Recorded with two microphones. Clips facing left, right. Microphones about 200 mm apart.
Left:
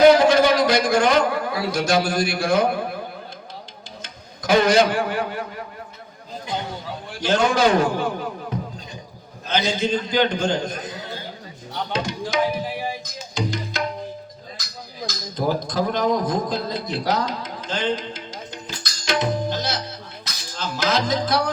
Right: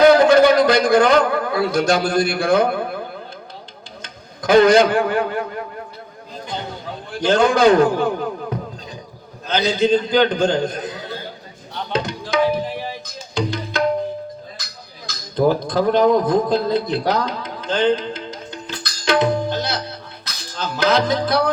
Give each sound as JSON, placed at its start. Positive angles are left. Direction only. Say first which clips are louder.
{"t": 0.1, "sound": "a man's voice", "louder": "right 3 dB", "side_deg": -55}
{"t": 4.0, "sound": "a man's voice", "louder": "right 5 dB", "side_deg": -55}
{"t": 7.3, "sound": "a man's voice", "louder": "right 5 dB", "side_deg": -55}
{"t": 11.9, "sound": "tabla", "louder": "right 4 dB", "side_deg": -60}
{"t": 12.6, "sound": "music", "louder": "right 1 dB", "side_deg": 10}
{"t": 13.3, "sound": "tabla", "louder": "right 4 dB", "side_deg": -60}
{"t": 15.4, "sound": "a man's voice", "louder": "right 6 dB", "side_deg": -60}
{"t": 20.2, "sound": "music", "louder": "right 3 dB", "side_deg": -60}